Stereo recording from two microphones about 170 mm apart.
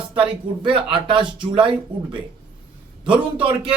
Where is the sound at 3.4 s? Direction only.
30° right (ahead or behind).